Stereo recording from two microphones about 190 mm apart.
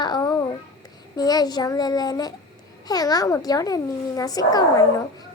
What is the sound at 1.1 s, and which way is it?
A child's voice, 20° left (ahead or behind).